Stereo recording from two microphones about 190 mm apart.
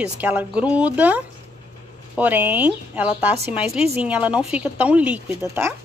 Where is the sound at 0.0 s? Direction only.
10° right (ahead or behind).